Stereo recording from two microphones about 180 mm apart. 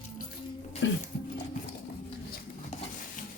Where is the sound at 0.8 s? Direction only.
90° left.